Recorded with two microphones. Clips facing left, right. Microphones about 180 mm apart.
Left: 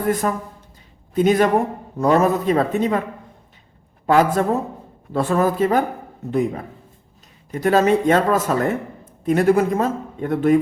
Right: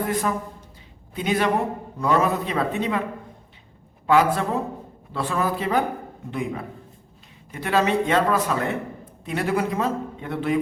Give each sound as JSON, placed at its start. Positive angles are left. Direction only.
{"t": 0.1, "sound": "a man's voice", "side_deg": 45}
{"t": 4.0, "sound": "a woman's voice", "side_deg": 45}